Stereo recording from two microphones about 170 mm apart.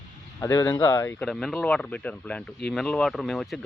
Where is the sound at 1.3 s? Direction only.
5° left (ahead or behind).